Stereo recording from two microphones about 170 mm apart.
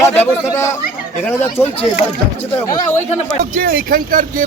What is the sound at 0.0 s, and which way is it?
Speech, 15° left (ahead or behind).